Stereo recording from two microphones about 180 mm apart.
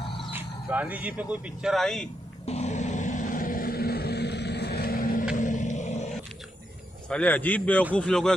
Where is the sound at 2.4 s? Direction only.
40° left (ahead or behind).